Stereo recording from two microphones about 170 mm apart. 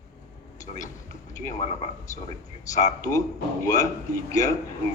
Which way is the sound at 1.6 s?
40° left (ahead or behind).